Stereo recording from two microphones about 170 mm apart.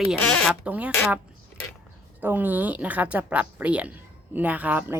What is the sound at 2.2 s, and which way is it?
A woman's voice, 10° right (ahead or behind).